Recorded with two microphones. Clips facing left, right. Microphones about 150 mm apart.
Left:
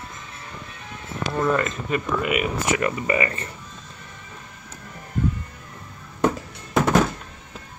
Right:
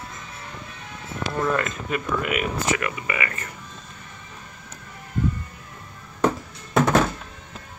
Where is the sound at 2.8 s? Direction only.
35° left (ahead or behind).